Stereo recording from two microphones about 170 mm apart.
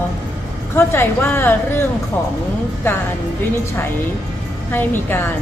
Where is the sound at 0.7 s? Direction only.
15° left (ahead or behind).